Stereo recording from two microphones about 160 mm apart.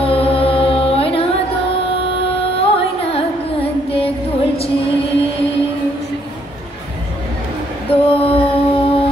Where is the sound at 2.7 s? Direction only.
35° left (ahead or behind).